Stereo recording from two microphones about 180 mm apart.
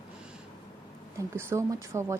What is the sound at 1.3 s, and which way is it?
Speech, 15° right (ahead or behind).